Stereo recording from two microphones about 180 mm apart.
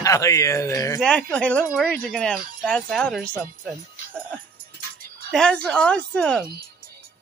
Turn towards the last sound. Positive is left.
turn(degrees=5)  # may be behind; listen again after turning